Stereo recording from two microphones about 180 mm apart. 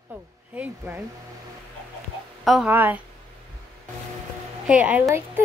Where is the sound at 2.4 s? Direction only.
5° right (ahead or behind).